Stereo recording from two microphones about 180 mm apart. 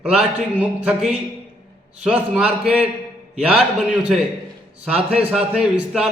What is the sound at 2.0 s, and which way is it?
Speech, 5° right (ahead or behind).